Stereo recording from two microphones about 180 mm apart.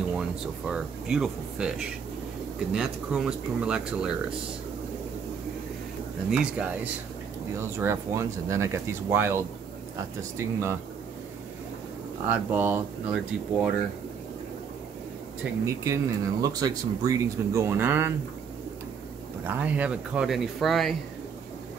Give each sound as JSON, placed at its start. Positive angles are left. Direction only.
{"t": 0.1, "sound": "speech", "side_deg": -5}
{"t": 6.3, "sound": "speech", "side_deg": -5}
{"t": 12.3, "sound": "speech", "side_deg": -10}
{"t": 15.6, "sound": "speech", "side_deg": -15}
{"t": 19.4, "sound": "speech", "side_deg": -10}